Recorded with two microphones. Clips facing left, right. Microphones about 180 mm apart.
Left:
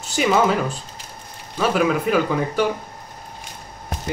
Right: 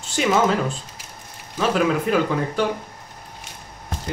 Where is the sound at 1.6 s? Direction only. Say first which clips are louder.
Left 1 dB; 5° left (ahead or behind).